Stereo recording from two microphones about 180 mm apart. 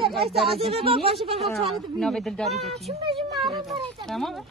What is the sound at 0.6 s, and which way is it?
Speech, 35° right (ahead or behind).